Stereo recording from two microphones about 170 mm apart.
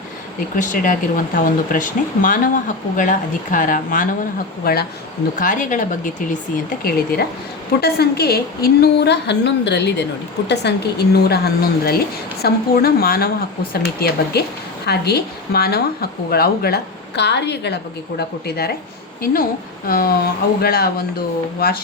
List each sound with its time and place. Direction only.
0.5 s speech: 50° left (ahead or behind)
4.6 s a woman's voice: 65° left (ahead or behind)
5.4 s speech: 50° left (ahead or behind)
6.7 s a woman's voice: 60° left (ahead or behind)
13.8 s a woman's voice: 75° left (ahead or behind); by 17.7 s 90° left
18.2 s a woman's voice: 70° left (ahead or behind)
19.2 s a woman's voice: 60° left (ahead or behind)